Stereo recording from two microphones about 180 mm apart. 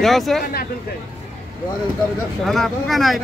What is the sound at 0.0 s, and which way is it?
Speech, centre (ahead or behind).